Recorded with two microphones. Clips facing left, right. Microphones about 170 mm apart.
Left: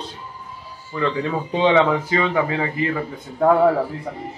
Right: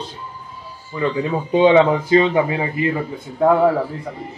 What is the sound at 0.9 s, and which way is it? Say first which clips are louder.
Speech: right 2 dB; 15° right (ahead or behind).